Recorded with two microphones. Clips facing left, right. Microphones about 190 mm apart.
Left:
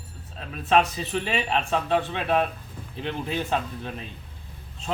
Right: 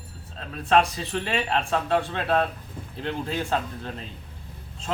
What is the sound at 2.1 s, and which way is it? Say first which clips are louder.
A man's voice: even; 15° left (ahead or behind).